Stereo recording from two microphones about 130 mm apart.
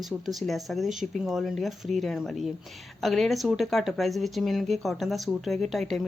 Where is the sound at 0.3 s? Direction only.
Centre (ahead or behind).